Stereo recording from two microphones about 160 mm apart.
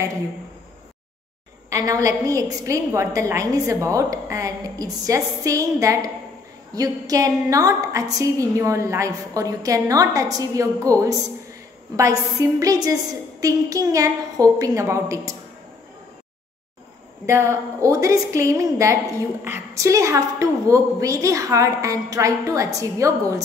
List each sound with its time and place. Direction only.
1.7 s a woman's voice: 20° right (ahead or behind)
17.3 s a woman's voice: 15° right (ahead or behind)